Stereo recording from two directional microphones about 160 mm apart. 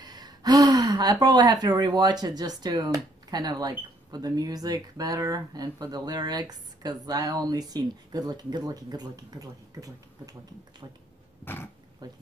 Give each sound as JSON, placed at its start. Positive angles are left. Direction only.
{"t": 0.0, "sound": "speech", "side_deg": -25}
{"t": 11.4, "sound": "speech", "side_deg": 15}
{"t": 12.0, "sound": "speech", "side_deg": -25}